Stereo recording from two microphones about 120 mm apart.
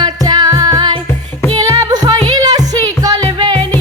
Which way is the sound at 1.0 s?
15° left (ahead or behind).